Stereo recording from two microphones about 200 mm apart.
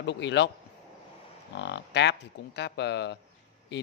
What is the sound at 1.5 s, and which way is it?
Speech, 60° left (ahead or behind).